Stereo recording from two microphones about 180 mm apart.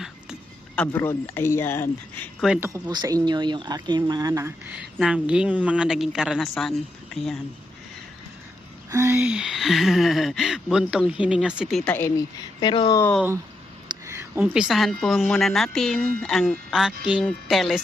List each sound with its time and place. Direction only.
0.8 s speech: 10° left (ahead or behind)
2.4 s speech: 5° right (ahead or behind)
2.6 s speech: 20° right (ahead or behind)
4.7 s speech: 5° right (ahead or behind)
8.9 s speech: 15° right (ahead or behind); by 11.9 s centre (ahead or behind)
12.5 s speech: 25° left (ahead or behind)
13.8 s a sound: 15° right (ahead or behind)
14.3 s speech: 5° right (ahead or behind)